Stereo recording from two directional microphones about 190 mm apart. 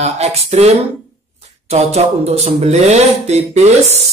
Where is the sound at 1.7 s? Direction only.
35° right (ahead or behind).